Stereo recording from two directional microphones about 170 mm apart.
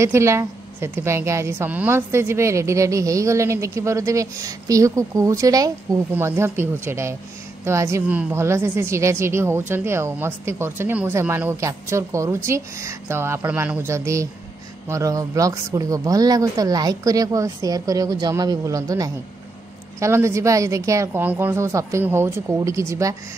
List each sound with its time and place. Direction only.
0.0 s a woman's voice: 15° right (ahead or behind)